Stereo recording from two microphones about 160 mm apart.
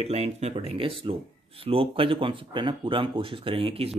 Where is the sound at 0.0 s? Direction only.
40° right (ahead or behind).